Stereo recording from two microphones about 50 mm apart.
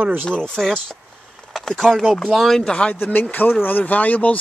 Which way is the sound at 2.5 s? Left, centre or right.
Centre.